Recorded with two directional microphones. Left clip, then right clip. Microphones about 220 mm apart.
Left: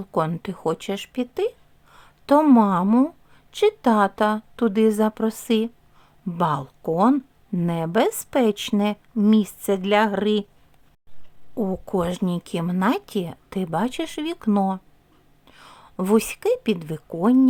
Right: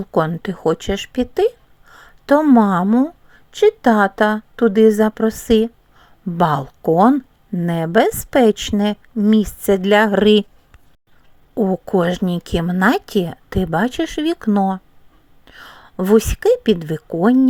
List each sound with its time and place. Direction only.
0.0 s speech: 15° right (ahead or behind)
0.4 s a sound: 15° right (ahead or behind)
2.6 s speech: 15° right (ahead or behind)
2.8 s speech: centre (ahead or behind); by 7.1 s 20° right (ahead or behind)
7.1 s a sound: centre (ahead or behind)
7.7 s speech: 15° right (ahead or behind)
11.5 s a woman's voice: 15° right (ahead or behind)